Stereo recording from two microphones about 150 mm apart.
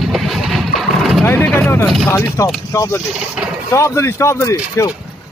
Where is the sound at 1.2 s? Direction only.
15° left (ahead or behind).